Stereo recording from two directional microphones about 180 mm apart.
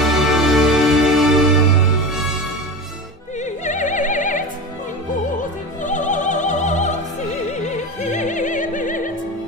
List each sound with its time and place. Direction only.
0.0 s music: centre (ahead or behind)
3.4 s opera: 45° left (ahead or behind)
5.8 s opera: 45° left (ahead or behind)